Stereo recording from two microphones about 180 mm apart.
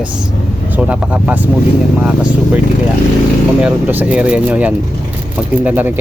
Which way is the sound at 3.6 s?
10° right (ahead or behind).